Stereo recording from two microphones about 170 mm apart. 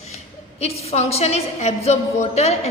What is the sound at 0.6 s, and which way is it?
A woman's voice, 40° left (ahead or behind).